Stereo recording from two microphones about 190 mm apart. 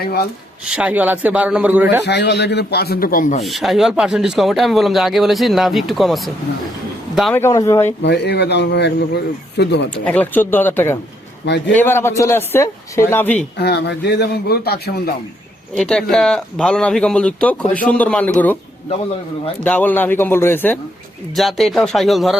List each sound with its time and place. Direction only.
0.0 s a man's voice: 55° left (ahead or behind)
0.6 s a man's voice: 5° right (ahead or behind)
2.0 s a man's voice: 60° left (ahead or behind); by 3.4 s 45° left (ahead or behind)
3.4 s speech: centre (ahead or behind)
7.3 s speech: 15° left (ahead or behind)
8.0 s a man's voice: 60° left (ahead or behind)
10.0 s speech: 5° left (ahead or behind)
13.6 s a man's voice: 60° left (ahead or behind)
15.7 s speech: 5° left (ahead or behind)
19.6 s speech: 10° left (ahead or behind)
21.3 s speech: centre (ahead or behind)